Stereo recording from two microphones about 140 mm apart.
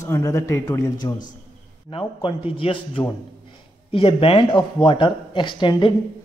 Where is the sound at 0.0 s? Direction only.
20° left (ahead or behind).